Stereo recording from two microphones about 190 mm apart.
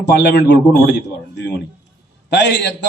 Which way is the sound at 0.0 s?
65° left (ahead or behind).